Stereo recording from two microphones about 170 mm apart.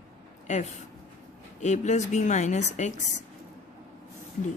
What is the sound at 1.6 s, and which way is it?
A woman's voice, 45° left (ahead or behind).